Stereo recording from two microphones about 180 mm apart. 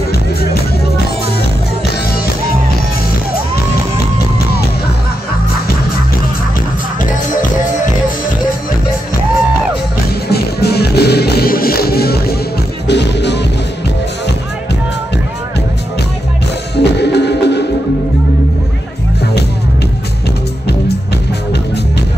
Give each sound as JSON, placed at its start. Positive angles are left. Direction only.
{"t": 0.1, "sound": "music", "side_deg": 60}
{"t": 10.2, "sound": "music", "side_deg": 65}
{"t": 12.8, "sound": "music", "side_deg": 70}
{"t": 16.7, "sound": "music", "side_deg": 70}